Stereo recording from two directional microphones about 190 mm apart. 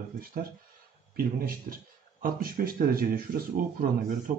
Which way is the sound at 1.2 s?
50° right (ahead or behind).